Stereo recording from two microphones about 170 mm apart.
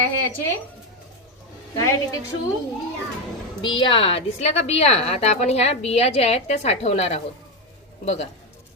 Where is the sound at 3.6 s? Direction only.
30° left (ahead or behind).